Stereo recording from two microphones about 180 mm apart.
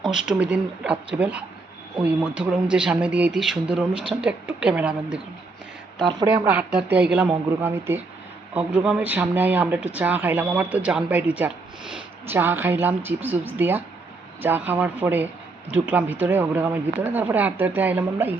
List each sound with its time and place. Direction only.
0.0 s a woman's voice: 5° right (ahead or behind)
6.1 s a woman's voice: 25° right (ahead or behind)
6.7 s speech: 5° right (ahead or behind)